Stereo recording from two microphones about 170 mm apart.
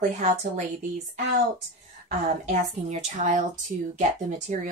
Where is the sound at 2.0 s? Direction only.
45° right (ahead or behind).